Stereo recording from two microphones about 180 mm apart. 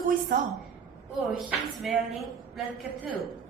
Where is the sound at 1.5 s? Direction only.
Centre (ahead or behind).